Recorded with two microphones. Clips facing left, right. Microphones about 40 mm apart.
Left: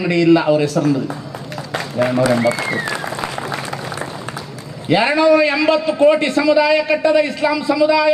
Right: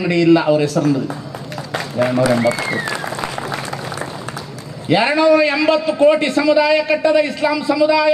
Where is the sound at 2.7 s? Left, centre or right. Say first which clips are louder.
Even; centre.